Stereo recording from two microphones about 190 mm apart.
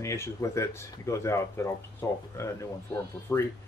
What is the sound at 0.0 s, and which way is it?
Speech, 15° left (ahead or behind).